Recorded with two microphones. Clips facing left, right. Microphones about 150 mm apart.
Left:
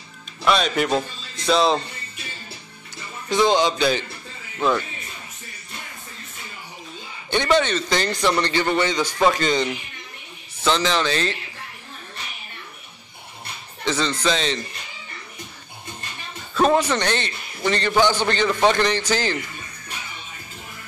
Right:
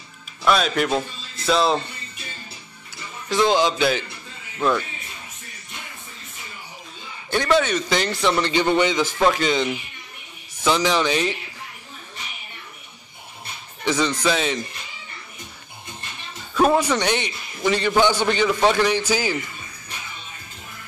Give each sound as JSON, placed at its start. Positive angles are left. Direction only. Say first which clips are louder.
{"t": 0.5, "sound": "a man's voice", "louder": "even", "side_deg": 0}
{"t": 3.3, "sound": "a man's voice", "louder": "even", "side_deg": 0}
{"t": 7.2, "sound": "a man's voice", "louder": "even", "side_deg": -5}
{"t": 8.5, "sound": "a man's voice", "louder": "right 2 dB", "side_deg": -15}
{"t": 9.2, "sound": "a man's voice", "louder": "left 1 dB", "side_deg": -5}
{"t": 13.8, "sound": "a man's voice", "louder": "right 1 dB", "side_deg": -10}
{"t": 16.5, "sound": "a man's voice", "louder": "even", "side_deg": -10}